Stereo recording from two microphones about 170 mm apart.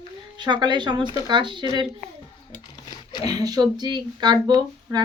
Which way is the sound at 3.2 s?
25° right (ahead or behind).